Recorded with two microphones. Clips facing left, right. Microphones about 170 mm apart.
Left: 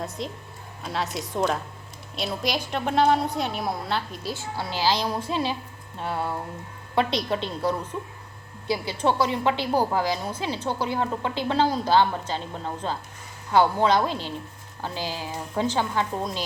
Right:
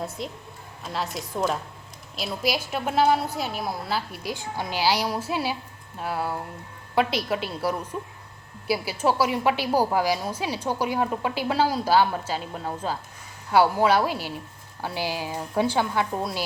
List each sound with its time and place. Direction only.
0.2 s a woman's voice: centre (ahead or behind)